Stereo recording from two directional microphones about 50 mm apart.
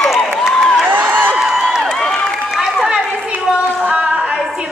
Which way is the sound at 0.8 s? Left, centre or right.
Right.